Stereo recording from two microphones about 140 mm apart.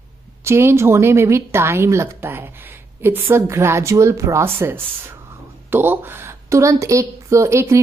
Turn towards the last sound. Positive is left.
turn(degrees=-20)  # may be behind; listen again after turning